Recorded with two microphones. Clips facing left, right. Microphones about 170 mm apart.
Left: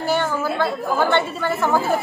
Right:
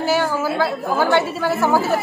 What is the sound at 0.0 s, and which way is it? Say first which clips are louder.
A woman's voice: right 2 dB; 5° right (ahead or behind).